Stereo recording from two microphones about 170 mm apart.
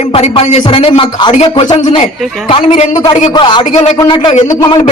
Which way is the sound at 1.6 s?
25° left (ahead or behind).